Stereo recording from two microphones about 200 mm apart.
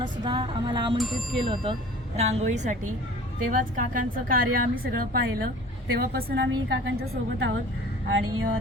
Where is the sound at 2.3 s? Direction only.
35° right (ahead or behind); by 7.5 s 65° right (ahead or behind).